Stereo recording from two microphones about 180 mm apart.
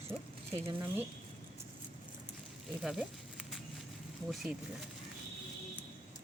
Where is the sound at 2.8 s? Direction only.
5° right (ahead or behind).